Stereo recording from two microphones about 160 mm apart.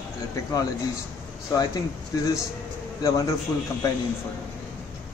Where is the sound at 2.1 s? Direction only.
20° left (ahead or behind).